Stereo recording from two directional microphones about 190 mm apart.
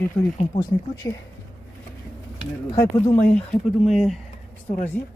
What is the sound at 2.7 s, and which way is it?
Speech, 20° left (ahead or behind).